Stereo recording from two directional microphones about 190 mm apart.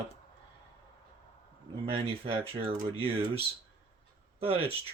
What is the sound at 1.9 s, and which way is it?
Speech, 30° right (ahead or behind).